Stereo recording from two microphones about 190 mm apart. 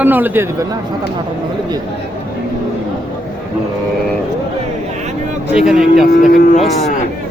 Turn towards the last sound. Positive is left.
turn(degrees=40)  # may be behind; listen again after turning